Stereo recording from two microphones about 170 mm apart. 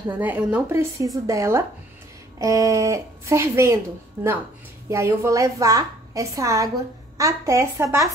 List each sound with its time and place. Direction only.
0.1 s a woman's voice: 10° right (ahead or behind)